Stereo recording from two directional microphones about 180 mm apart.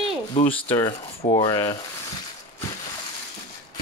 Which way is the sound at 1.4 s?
25° left (ahead or behind).